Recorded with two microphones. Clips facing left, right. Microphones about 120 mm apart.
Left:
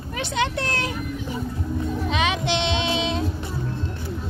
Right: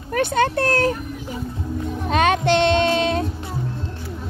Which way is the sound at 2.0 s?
45° right (ahead or behind).